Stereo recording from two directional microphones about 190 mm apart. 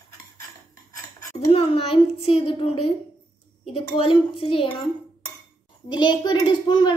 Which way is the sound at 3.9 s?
30° left (ahead or behind).